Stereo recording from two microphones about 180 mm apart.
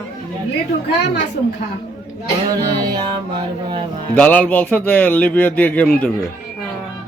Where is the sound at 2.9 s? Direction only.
30° right (ahead or behind).